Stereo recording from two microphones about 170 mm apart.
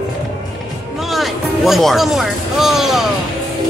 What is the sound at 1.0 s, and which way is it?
Speech, centre (ahead or behind).